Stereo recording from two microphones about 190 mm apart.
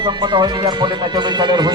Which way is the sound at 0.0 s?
25° right (ahead or behind).